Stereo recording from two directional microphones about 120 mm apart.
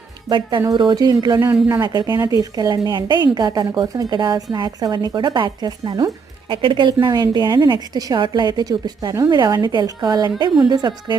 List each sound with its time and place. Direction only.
0.3 s a woman's voice: 40° right (ahead or behind)